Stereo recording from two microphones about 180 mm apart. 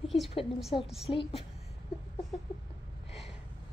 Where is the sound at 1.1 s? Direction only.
30° left (ahead or behind).